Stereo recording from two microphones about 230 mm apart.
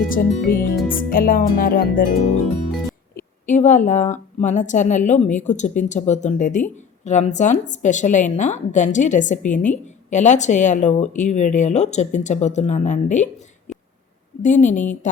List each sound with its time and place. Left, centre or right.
0.1 s speech: left
3.4 s speech: left
14.4 s speech: left